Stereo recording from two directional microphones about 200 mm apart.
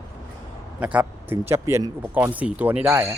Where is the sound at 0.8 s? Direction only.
5° right (ahead or behind).